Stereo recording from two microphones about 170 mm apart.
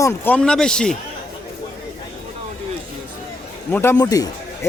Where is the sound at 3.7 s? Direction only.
10° left (ahead or behind).